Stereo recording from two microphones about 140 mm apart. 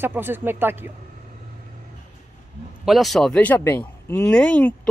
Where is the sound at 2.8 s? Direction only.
Centre (ahead or behind).